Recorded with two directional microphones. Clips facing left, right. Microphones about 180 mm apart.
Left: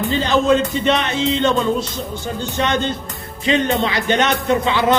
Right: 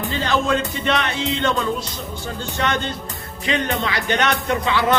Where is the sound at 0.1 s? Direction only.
20° left (ahead or behind).